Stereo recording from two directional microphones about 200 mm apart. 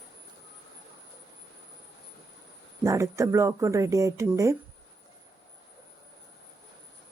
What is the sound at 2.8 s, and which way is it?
Speech, 15° right (ahead or behind).